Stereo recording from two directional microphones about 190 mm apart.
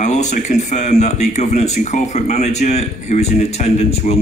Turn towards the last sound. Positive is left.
turn(degrees=30)  # may be behind; listen again after turning